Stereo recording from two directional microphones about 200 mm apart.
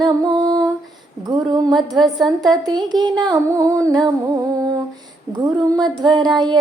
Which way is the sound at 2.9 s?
20° right (ahead or behind).